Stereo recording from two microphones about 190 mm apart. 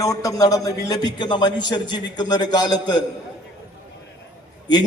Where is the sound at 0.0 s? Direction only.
20° left (ahead or behind).